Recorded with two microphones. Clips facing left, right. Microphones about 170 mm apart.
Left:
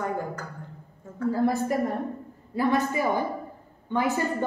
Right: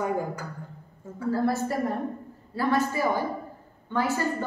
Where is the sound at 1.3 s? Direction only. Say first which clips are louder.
Left 1 dB; 15° left (ahead or behind).